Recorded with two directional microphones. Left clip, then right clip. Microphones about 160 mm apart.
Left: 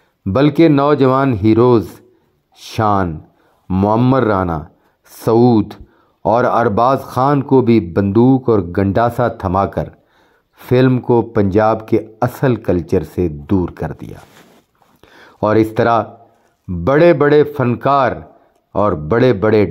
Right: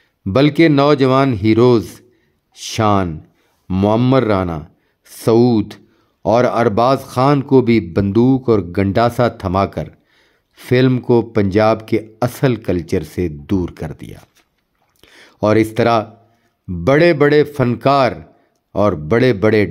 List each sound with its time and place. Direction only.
0.2 s speech: 10° right (ahead or behind)
3.6 s speech: 25° right (ahead or behind)
4.1 s speech: 5° right (ahead or behind)
15.0 s a sound: 15° right (ahead or behind)
16.8 s speech: 15° right (ahead or behind)